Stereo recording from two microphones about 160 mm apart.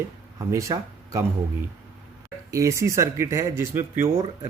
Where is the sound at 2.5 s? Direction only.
20° right (ahead or behind).